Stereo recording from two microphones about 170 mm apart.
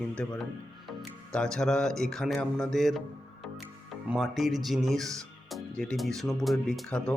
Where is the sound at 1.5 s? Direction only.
5° left (ahead or behind).